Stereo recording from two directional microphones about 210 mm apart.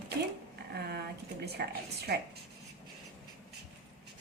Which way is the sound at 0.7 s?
50° right (ahead or behind).